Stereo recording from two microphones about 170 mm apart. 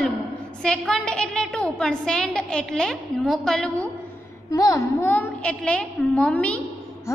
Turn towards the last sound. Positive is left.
turn(degrees=5)  # may be behind; listen again after turning